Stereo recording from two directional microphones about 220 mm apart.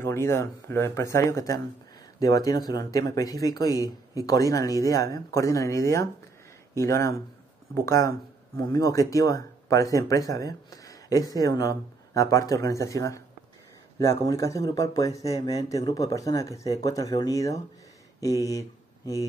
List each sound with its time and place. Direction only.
0.0 s speech: 10° left (ahead or behind)